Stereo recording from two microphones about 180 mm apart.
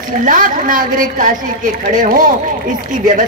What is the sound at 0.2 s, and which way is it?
A woman's voice, 45° right (ahead or behind).